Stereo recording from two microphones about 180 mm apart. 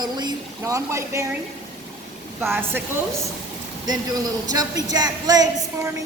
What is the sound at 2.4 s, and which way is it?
Speech, 10° right (ahead or behind).